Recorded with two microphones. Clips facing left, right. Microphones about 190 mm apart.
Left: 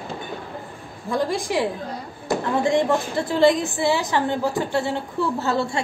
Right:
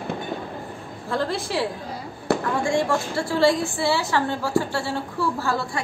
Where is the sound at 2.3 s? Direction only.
65° right (ahead or behind).